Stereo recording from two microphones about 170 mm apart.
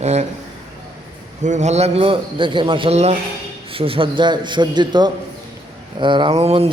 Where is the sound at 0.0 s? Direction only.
40° right (ahead or behind).